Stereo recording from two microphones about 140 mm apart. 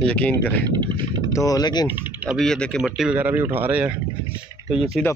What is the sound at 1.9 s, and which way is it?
Speech, 10° right (ahead or behind).